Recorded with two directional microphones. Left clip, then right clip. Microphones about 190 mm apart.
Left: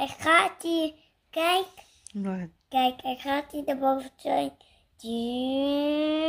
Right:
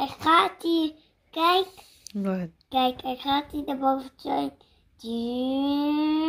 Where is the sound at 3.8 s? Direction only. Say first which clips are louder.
Right 1 dB; 65° left (ahead or behind).